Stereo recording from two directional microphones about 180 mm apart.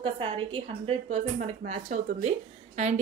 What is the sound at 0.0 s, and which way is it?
A woman's voice, 30° right (ahead or behind).